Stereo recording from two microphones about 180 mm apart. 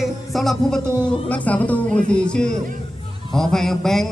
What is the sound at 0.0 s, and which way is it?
Music, centre (ahead or behind).